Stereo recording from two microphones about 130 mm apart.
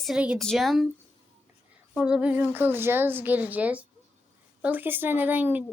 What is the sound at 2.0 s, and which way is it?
A woman's voice, 5° right (ahead or behind).